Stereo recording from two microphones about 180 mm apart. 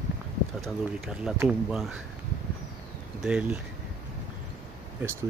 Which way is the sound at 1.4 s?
5° right (ahead or behind).